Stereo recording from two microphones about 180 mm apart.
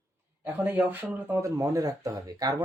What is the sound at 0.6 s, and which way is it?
Speech, 10° right (ahead or behind).